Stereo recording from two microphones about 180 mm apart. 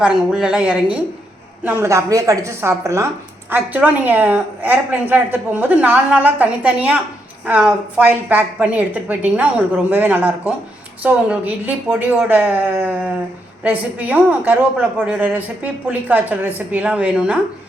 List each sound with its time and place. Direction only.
0.0 s a woman's voice: 5° right (ahead or behind)